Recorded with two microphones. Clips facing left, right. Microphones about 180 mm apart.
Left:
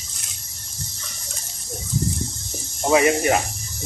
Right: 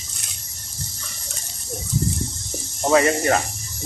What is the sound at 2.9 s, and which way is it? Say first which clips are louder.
Speech: even; 15° left (ahead or behind).